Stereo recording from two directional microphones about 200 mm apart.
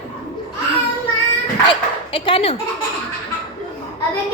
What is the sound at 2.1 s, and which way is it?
Speech, 25° left (ahead or behind).